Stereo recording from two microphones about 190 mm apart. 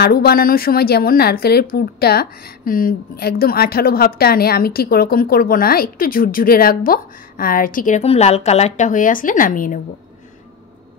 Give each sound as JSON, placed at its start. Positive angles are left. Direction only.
{"t": 0.0, "sound": "a woman's voice", "side_deg": 55}